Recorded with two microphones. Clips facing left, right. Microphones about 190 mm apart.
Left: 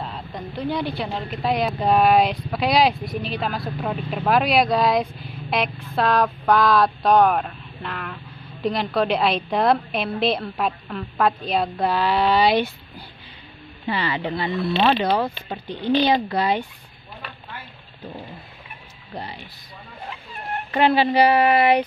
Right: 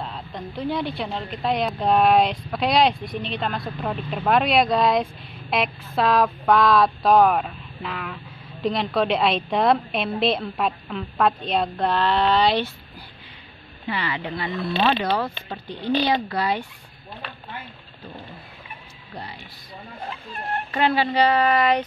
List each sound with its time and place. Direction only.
0.0 s speech: centre (ahead or behind)
13.8 s speech: 30° left (ahead or behind)
20.7 s speech: 20° left (ahead or behind)